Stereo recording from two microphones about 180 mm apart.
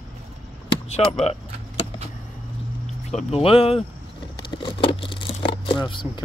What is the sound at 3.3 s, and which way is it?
Speech, 35° left (ahead or behind).